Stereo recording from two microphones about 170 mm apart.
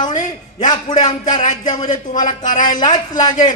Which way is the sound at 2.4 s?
50° left (ahead or behind).